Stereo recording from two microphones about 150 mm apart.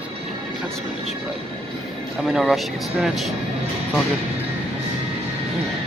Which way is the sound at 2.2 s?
Centre (ahead or behind).